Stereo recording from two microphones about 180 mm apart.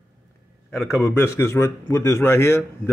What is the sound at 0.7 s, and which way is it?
A man's voice, 15° left (ahead or behind).